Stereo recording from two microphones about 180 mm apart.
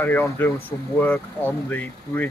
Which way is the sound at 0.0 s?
10° left (ahead or behind).